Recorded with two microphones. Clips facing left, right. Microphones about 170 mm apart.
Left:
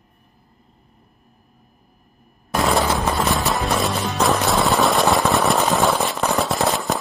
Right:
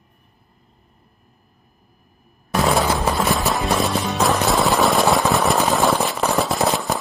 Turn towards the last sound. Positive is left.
turn(degrees=0)  # may be behind; listen again after turning